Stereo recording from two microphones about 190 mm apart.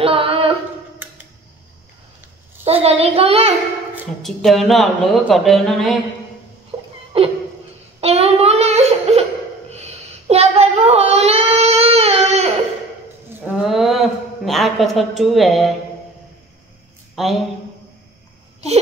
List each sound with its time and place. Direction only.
0.0 s child singing: 30° right (ahead or behind)
2.6 s a child's voice: 30° right (ahead or behind)
4.2 s speech: centre (ahead or behind)
6.7 s a sound: 25° right (ahead or behind)
13.3 s a sound: 5° right (ahead or behind)
17.1 s a woman's voice: centre (ahead or behind)